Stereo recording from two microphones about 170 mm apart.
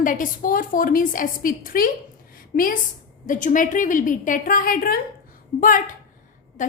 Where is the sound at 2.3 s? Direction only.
55° left (ahead or behind).